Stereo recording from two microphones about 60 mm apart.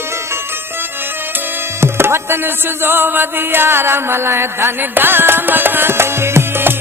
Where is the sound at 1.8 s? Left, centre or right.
Right.